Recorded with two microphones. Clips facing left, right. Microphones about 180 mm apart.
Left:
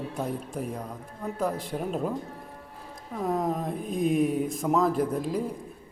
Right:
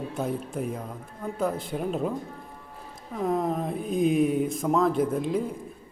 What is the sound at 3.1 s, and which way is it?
A woman's voice, centre (ahead or behind).